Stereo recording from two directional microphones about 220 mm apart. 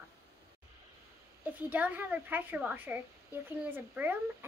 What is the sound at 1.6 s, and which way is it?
A woman's voice, 5° right (ahead or behind).